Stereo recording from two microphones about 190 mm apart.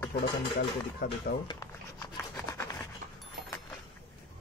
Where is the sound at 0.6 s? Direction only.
55° left (ahead or behind).